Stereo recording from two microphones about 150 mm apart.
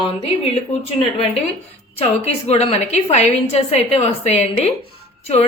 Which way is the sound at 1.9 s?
45° left (ahead or behind).